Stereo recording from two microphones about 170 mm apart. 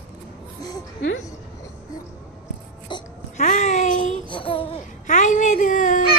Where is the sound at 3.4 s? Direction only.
45° left (ahead or behind).